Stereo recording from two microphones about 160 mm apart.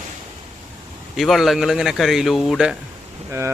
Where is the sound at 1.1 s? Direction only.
Centre (ahead or behind).